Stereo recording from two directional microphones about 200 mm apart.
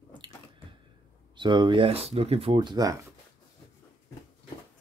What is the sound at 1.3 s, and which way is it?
Speech, 25° right (ahead or behind).